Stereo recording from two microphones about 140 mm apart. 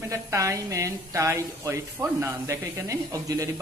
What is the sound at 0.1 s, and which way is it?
A woman's voice, 20° right (ahead or behind).